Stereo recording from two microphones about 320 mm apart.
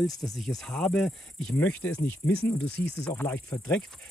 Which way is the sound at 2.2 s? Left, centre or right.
Left.